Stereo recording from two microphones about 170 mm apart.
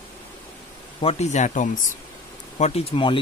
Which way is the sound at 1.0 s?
40° left (ahead or behind).